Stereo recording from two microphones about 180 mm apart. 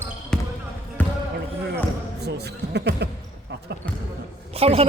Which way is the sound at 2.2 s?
70° right (ahead or behind).